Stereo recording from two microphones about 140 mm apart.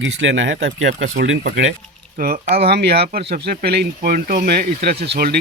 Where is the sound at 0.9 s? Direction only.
65° right (ahead or behind).